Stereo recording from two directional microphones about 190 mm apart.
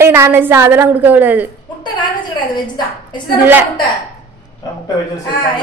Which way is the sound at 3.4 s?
10° right (ahead or behind).